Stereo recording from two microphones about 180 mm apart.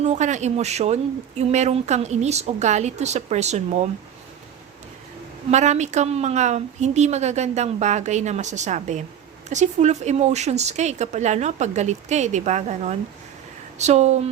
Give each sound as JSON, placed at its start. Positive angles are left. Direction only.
{"t": 0.0, "sound": "a woman's voice", "side_deg": -40}
{"t": 5.5, "sound": "a woman's voice", "side_deg": -40}